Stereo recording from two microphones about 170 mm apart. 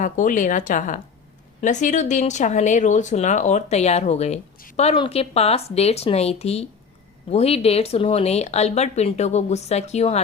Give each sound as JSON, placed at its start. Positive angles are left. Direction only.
{"t": 0.0, "sound": "speech", "side_deg": 50}